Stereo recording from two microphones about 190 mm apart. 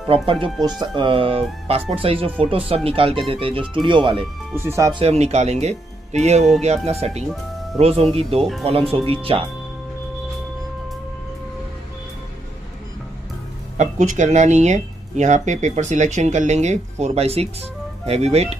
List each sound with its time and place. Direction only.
0.1 s speech: 30° right (ahead or behind)
4.6 s speech: 15° right (ahead or behind)
5.0 s speech: 35° right (ahead or behind)
13.7 s speech: 40° right (ahead or behind)